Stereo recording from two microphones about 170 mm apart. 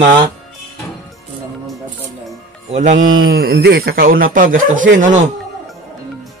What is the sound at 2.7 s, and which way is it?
Speech, 45° right (ahead or behind).